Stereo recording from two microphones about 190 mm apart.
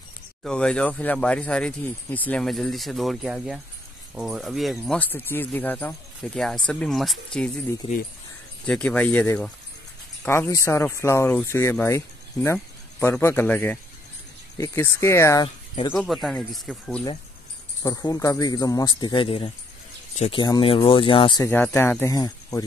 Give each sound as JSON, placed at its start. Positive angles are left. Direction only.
{"t": 0.4, "sound": "speech", "side_deg": 5}
{"t": 8.6, "sound": "speech", "side_deg": 5}
{"t": 15.4, "sound": "speech", "side_deg": 25}
{"t": 15.9, "sound": "speech", "side_deg": 0}
{"t": 17.8, "sound": "speech", "side_deg": 20}
{"t": 21.5, "sound": "speech", "side_deg": 10}